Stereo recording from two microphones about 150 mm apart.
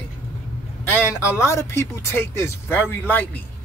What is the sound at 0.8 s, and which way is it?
Speech, 15° left (ahead or behind).